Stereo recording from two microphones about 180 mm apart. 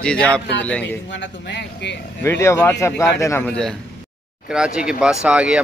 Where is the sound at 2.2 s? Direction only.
15° left (ahead or behind).